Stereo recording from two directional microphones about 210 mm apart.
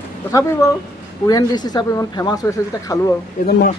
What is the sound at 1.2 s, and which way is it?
Speech, 20° left (ahead or behind).